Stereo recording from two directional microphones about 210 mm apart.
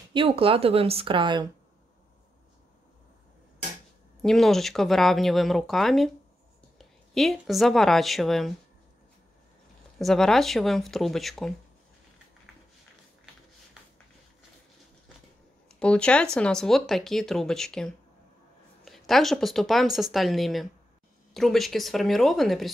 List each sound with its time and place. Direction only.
0.1 s speech: 25° right (ahead or behind)
4.2 s a woman's voice: centre (ahead or behind)
9.9 s speech: centre (ahead or behind)
15.8 s speech: 5° left (ahead or behind)